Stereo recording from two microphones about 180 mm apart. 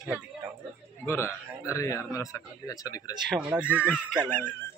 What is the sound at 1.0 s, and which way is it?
A man's voice, 15° left (ahead or behind).